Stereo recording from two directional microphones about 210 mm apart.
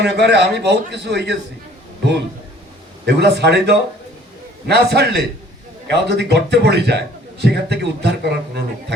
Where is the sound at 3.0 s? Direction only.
55° right (ahead or behind).